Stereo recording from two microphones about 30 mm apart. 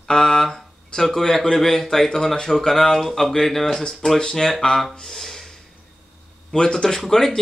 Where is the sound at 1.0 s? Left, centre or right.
Centre.